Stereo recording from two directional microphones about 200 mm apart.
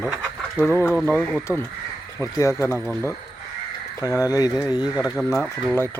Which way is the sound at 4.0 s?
15° left (ahead or behind).